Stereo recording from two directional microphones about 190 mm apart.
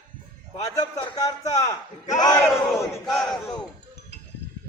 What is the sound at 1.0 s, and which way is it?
Speech, 20° left (ahead or behind).